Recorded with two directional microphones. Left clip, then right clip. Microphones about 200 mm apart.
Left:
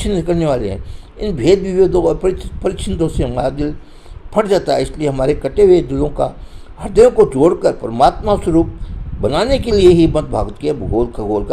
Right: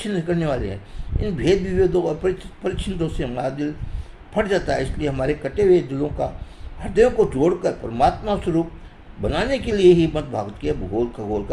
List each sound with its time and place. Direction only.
0.0 s speech: 35° left (ahead or behind)